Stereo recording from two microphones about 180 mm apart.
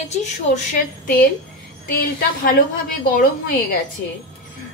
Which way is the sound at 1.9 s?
55° left (ahead or behind).